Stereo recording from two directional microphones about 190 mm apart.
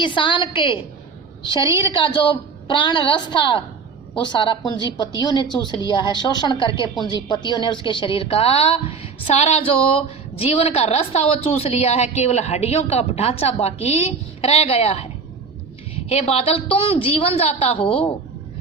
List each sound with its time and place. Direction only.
0.0 s a woman's voice: 25° left (ahead or behind)
1.6 s a woman's voice: 15° right (ahead or behind)
1.9 s a woman's voice: 25° left (ahead or behind)
16.0 s a woman's voice: 30° left (ahead or behind)